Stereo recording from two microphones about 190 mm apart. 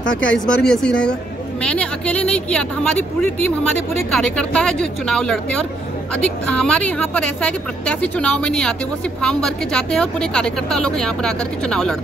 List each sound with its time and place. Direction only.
0.2 s a woman's voice: 5° left (ahead or behind)